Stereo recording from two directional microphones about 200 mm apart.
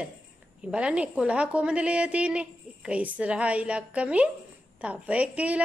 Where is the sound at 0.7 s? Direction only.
5° right (ahead or behind).